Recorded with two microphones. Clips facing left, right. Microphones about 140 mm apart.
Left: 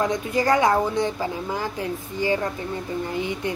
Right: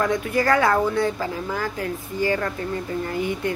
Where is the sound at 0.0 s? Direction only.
20° left (ahead or behind).